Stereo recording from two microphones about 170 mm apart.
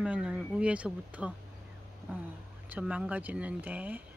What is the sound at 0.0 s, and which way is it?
Speech, 5° right (ahead or behind).